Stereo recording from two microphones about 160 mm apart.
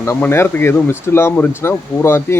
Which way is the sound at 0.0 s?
15° left (ahead or behind).